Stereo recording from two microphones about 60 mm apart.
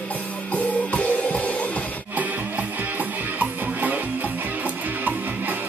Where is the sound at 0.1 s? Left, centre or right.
Left.